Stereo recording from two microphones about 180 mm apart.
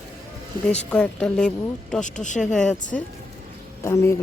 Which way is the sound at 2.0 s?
45° left (ahead or behind).